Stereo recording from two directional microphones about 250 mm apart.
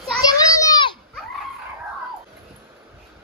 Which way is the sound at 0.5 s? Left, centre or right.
Centre.